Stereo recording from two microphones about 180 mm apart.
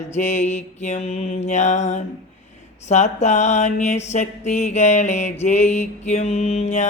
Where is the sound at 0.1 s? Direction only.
40° left (ahead or behind).